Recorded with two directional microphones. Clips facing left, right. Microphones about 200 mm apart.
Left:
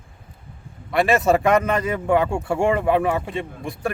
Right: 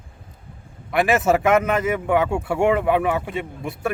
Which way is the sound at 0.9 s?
Centre (ahead or behind).